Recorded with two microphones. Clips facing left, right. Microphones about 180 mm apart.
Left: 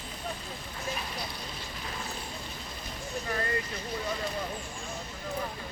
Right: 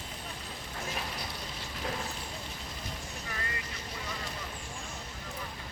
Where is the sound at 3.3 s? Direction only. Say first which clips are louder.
Left 9 dB; 45° left (ahead or behind).